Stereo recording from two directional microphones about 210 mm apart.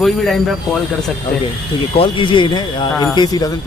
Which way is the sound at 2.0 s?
25° left (ahead or behind).